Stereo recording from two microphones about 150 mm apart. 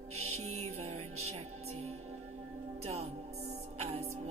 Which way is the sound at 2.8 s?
45° right (ahead or behind).